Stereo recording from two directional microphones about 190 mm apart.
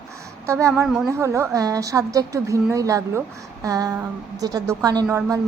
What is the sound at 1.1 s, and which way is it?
A woman's voice, 15° right (ahead or behind).